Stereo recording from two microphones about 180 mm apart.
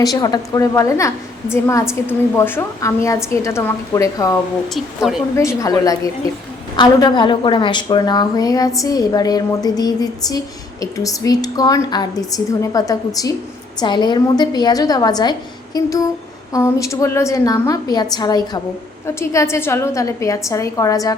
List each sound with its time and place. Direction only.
0.0 s a woman's voice: 20° left (ahead or behind)
5.4 s a woman's voice: 15° left (ahead or behind)